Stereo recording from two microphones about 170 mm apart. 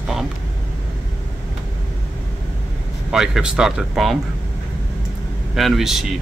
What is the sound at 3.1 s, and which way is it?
Speech, 5° right (ahead or behind).